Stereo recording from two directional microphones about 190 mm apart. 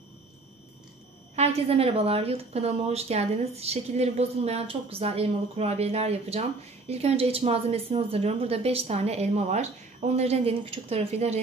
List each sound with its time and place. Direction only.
1.3 s a woman's voice: 35° right (ahead or behind)